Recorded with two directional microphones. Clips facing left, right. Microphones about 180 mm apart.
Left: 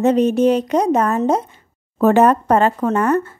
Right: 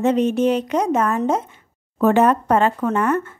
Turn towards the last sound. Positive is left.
turn(degrees=40)  # may be behind; listen again after turning